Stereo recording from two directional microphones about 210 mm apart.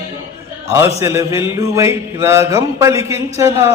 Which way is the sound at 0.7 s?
15° right (ahead or behind).